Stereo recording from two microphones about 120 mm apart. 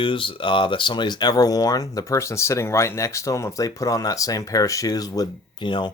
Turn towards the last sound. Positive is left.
turn(degrees=40)  # may be behind; listen again after turning